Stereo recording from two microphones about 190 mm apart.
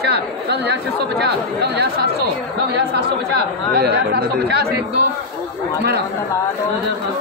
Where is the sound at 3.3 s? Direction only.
55° right (ahead or behind).